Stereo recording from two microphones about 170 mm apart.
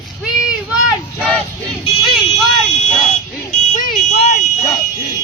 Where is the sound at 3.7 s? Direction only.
50° left (ahead or behind).